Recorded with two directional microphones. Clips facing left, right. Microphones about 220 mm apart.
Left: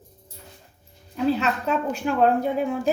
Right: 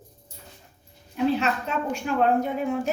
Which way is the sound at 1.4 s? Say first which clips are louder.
Left 2 dB; 35° left (ahead or behind).